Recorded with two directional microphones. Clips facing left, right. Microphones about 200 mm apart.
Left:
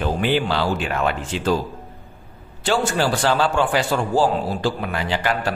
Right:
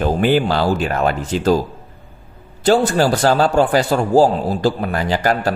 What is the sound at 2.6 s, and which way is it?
Speech, 40° right (ahead or behind).